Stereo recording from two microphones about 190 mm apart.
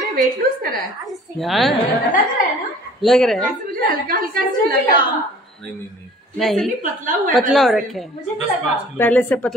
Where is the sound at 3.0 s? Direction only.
Centre (ahead or behind).